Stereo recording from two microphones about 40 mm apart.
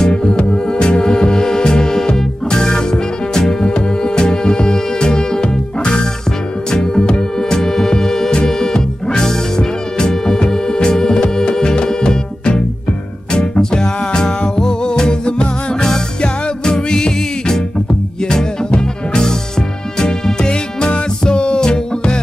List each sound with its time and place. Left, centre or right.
0.0 s music: centre